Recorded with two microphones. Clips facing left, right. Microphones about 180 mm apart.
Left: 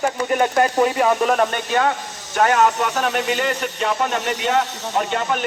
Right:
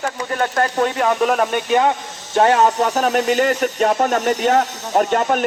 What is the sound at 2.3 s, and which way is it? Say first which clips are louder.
Speech: right 2 dB; 30° right (ahead or behind).